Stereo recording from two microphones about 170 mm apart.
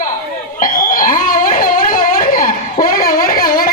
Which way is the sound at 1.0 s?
55° left (ahead or behind).